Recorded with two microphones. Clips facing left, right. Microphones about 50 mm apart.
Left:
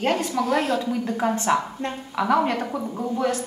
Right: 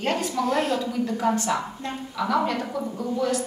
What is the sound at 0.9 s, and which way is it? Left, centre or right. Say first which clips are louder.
A man's voice: even; left.